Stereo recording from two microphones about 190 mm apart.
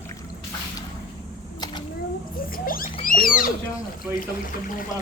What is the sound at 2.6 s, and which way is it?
Rodents, 50° left (ahead or behind).